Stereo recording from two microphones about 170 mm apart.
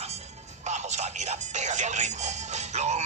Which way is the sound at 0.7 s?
45° right (ahead or behind).